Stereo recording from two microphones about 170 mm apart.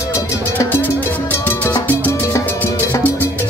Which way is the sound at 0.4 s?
10° left (ahead or behind).